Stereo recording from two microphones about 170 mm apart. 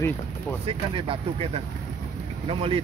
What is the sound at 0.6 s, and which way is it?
Speech, 30° right (ahead or behind).